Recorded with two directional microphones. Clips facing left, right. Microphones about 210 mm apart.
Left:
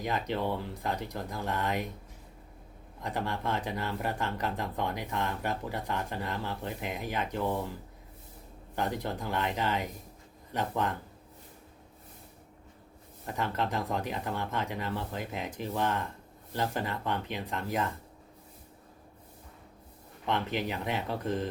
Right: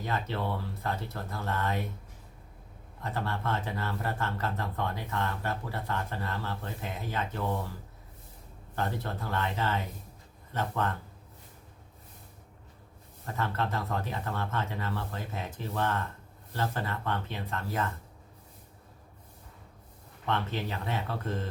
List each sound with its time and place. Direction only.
0.0 s speech: 15° left (ahead or behind)
3.0 s speech: 15° left (ahead or behind)
8.7 s speech: 15° left (ahead or behind)
13.2 s speech: 15° left (ahead or behind)
20.2 s speech: 15° left (ahead or behind)